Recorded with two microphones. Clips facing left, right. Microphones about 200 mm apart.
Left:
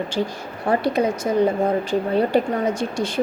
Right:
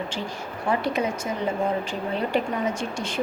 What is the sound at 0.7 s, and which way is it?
Speech, 35° left (ahead or behind).